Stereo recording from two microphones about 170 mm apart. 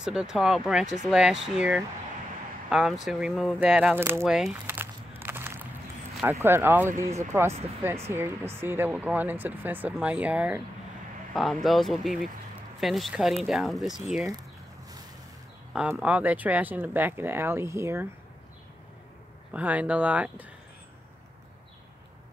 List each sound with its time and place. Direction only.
0.0 s speech: 5° right (ahead or behind)
5.2 s a sound: 15° right (ahead or behind)
6.2 s speech: 15° right (ahead or behind)
15.7 s speech: 5° right (ahead or behind)
19.5 s speech: 10° right (ahead or behind)